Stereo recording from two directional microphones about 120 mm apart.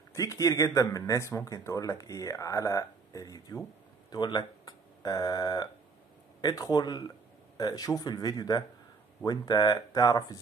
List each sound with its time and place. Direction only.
0.1 s speech: 25° left (ahead or behind)